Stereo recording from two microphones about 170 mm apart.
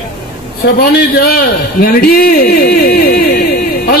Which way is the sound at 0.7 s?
65° left (ahead or behind).